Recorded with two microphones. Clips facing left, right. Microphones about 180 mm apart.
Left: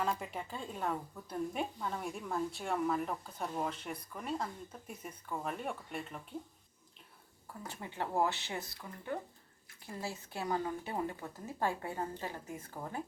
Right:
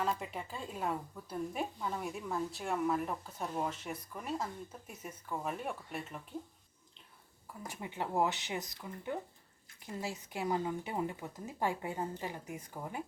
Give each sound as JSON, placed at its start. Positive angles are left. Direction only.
{"t": 0.0, "sound": "a woman's voice", "side_deg": 0}
{"t": 7.6, "sound": "speech", "side_deg": -15}